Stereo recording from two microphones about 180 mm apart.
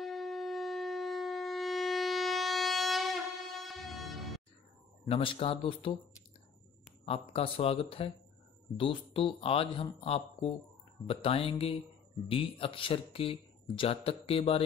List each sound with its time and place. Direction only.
0.0 s shofar: centre (ahead or behind)
5.0 s speech: 30° left (ahead or behind)
7.1 s speech: 30° left (ahead or behind)